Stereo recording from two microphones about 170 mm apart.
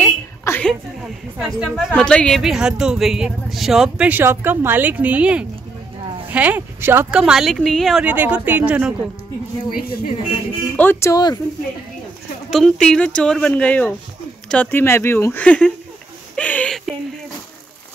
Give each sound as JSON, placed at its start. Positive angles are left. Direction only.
{"t": 0.0, "sound": "a sound", "side_deg": 10}
{"t": 1.4, "sound": "a woman's voice", "side_deg": -5}
{"t": 9.8, "sound": "speech", "side_deg": 60}
{"t": 10.8, "sound": "speech", "side_deg": 15}
{"t": 12.4, "sound": "a woman's voice", "side_deg": 0}
{"t": 16.3, "sound": "a sound", "side_deg": 10}